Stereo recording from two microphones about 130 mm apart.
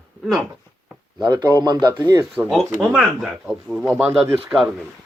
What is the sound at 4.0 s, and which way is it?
Speech, 15° right (ahead or behind).